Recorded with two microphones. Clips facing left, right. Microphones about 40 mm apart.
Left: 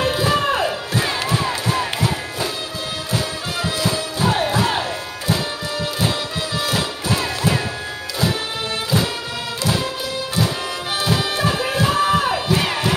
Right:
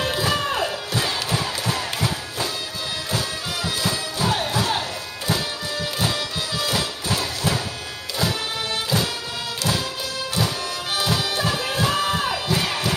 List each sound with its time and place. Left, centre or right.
0.1 s crowd: left
3.8 s music: centre
4.3 s crowd: left
6.0 s music: left
11.0 s bagpipes: left
11.5 s crowd: left